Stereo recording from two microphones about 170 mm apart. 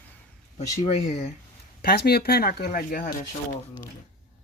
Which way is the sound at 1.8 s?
65° left (ahead or behind).